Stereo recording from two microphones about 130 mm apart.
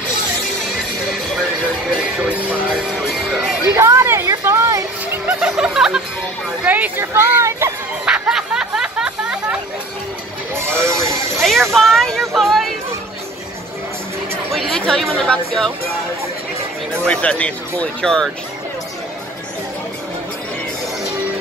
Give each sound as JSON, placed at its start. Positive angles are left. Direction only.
{"t": 2.0, "sound": "music", "side_deg": -10}
{"t": 3.6, "sound": "a sound", "side_deg": -25}
{"t": 4.3, "sound": "music", "side_deg": -25}
{"t": 5.2, "sound": "music", "side_deg": -5}
{"t": 6.6, "sound": "speech", "side_deg": -15}
{"t": 8.0, "sound": "a sound", "side_deg": -5}
{"t": 10.5, "sound": "music", "side_deg": -20}
{"t": 11.7, "sound": "speech", "side_deg": 0}
{"t": 12.4, "sound": "a sound", "side_deg": 0}
{"t": 14.5, "sound": "speech", "side_deg": 5}
{"t": 17.0, "sound": "speech", "side_deg": 10}